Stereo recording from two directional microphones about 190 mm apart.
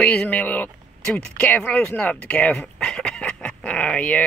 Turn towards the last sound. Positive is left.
turn(degrees=5)  # may be behind; listen again after turning